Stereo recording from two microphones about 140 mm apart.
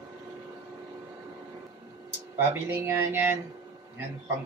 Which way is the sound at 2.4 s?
20° right (ahead or behind).